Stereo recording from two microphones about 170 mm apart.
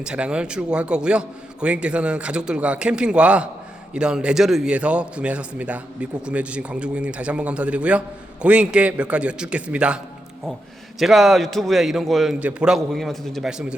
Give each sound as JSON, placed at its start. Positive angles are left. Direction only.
{"t": 0.0, "sound": "a man's voice", "side_deg": -5}
{"t": 11.0, "sound": "a man's voice", "side_deg": 0}